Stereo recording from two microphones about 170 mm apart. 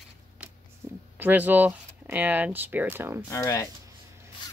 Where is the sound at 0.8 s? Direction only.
15° right (ahead or behind).